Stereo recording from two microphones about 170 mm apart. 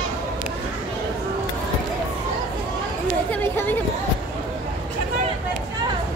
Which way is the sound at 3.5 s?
10° left (ahead or behind).